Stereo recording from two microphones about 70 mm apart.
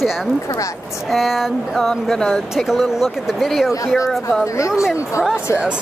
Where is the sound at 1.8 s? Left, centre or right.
Centre.